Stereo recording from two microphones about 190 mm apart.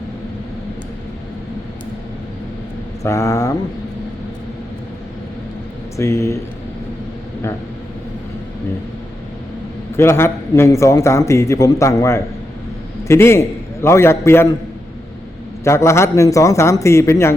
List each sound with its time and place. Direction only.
3.0 s a man's voice: 15° left (ahead or behind)
6.0 s a man's voice: 15° left (ahead or behind)
10.0 s a man's voice: 15° left (ahead or behind)
15.6 s a man's voice: 15° left (ahead or behind)